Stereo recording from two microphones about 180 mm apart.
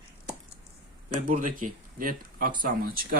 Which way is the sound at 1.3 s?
50° right (ahead or behind).